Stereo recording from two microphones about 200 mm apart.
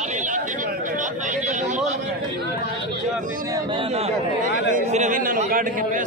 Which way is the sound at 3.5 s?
25° right (ahead or behind).